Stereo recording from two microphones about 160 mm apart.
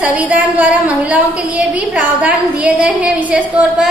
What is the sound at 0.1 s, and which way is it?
A woman's voice, 10° right (ahead or behind).